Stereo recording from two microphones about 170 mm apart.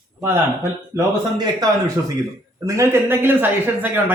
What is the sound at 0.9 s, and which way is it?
Speech, 25° right (ahead or behind).